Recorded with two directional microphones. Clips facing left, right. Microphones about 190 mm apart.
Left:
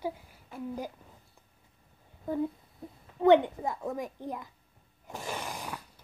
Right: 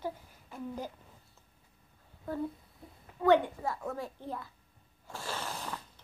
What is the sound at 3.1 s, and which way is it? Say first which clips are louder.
A child's voice: left 4 dB; 20° left (ahead or behind).